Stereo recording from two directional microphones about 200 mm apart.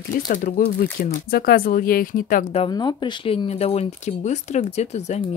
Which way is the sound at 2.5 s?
25° left (ahead or behind).